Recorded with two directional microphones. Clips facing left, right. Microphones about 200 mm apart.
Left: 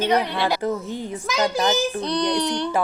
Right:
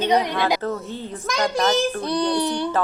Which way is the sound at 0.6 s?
15° left (ahead or behind).